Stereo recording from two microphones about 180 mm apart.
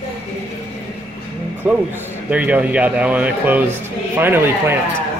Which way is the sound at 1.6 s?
10° right (ahead or behind).